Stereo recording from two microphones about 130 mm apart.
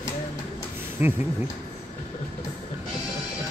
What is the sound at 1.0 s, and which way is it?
Speech, 15° right (ahead or behind).